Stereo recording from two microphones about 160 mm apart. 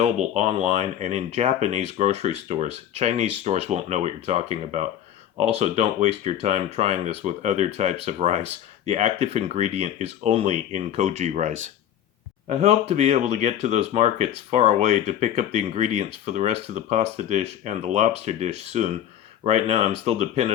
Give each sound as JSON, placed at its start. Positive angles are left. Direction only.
{"t": 0.0, "sound": "speech", "side_deg": -45}
{"t": 12.9, "sound": "speech", "side_deg": -40}